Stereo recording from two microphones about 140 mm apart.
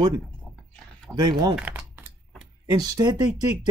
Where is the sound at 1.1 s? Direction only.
30° right (ahead or behind).